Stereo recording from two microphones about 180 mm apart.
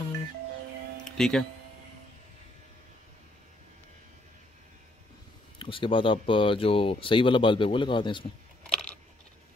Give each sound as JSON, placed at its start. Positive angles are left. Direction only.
{"t": 1.0, "sound": "music", "side_deg": 5}
{"t": 5.6, "sound": "speech", "side_deg": 30}
{"t": 8.6, "sound": "a sound", "side_deg": 5}